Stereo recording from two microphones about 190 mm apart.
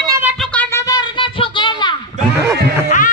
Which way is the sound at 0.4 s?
10° left (ahead or behind).